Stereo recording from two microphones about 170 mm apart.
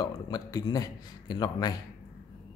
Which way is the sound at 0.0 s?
20° left (ahead or behind).